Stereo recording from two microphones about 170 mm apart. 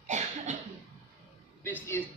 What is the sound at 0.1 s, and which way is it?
Cough, 45° right (ahead or behind).